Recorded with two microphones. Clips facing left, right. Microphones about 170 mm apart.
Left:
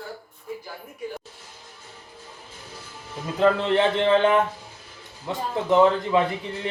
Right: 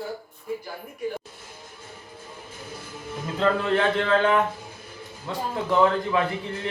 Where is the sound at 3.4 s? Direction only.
25° left (ahead or behind).